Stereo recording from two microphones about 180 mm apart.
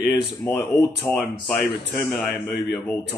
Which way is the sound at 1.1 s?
10° left (ahead or behind).